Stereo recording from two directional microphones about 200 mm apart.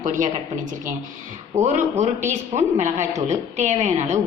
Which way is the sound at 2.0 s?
35° right (ahead or behind).